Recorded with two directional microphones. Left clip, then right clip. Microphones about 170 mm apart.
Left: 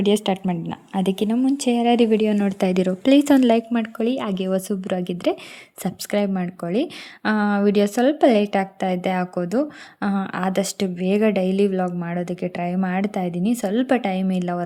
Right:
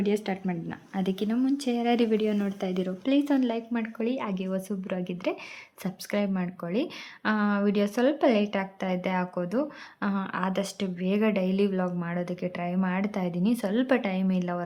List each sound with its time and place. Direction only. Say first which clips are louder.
0.0 s speech: left 8 dB; 40° left (ahead or behind)